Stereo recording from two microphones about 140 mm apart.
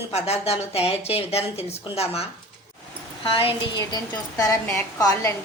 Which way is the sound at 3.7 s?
25° left (ahead or behind).